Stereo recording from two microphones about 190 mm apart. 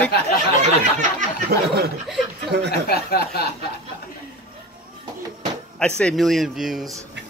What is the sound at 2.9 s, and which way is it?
Speech, 55° left (ahead or behind).